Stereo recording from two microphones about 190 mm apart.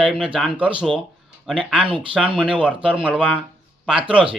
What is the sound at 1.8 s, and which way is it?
Speech, 25° right (ahead or behind).